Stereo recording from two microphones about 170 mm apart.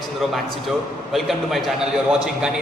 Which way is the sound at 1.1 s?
Centre (ahead or behind).